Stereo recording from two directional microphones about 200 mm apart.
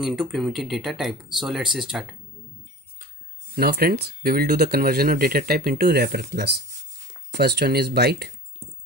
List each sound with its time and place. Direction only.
0.0 s speech: centre (ahead or behind)
3.5 s speech: 50° right (ahead or behind)